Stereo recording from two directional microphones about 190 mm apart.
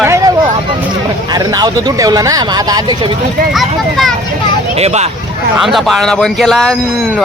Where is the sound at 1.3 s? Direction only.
20° right (ahead or behind).